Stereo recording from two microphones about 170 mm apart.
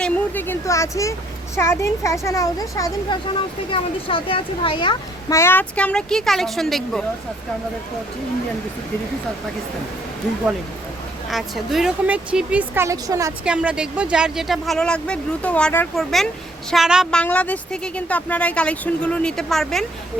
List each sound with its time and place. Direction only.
0.0 s a woman's voice: 10° left (ahead or behind)
3.7 s speech: 30° left (ahead or behind)
5.3 s speech: 15° left (ahead or behind)
11.3 s speech: centre (ahead or behind); by 13.3 s 20° right (ahead or behind)
13.4 s a woman's voice: 5° right (ahead or behind)